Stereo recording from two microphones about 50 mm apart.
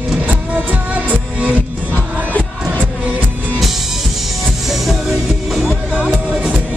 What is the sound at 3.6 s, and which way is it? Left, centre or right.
Music, centre.